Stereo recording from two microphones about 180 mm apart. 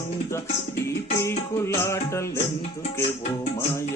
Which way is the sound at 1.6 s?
15° left (ahead or behind).